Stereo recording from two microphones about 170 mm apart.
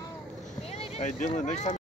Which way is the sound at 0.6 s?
35° left (ahead or behind).